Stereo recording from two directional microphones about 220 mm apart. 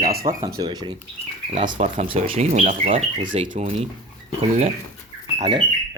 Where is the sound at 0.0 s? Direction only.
40° right (ahead or behind).